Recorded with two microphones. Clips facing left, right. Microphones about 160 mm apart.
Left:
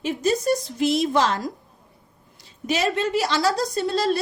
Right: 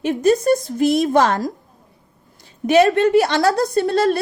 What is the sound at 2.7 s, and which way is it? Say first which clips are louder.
A woman's voice: right 10 dB; 60° right (ahead or behind).